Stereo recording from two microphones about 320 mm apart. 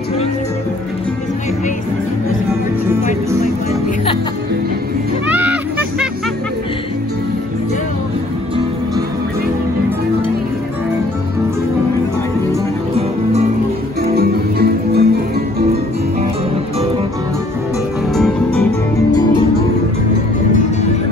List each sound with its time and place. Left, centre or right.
5.3 s a sound: centre
14.1 s music: right
18.1 s music: centre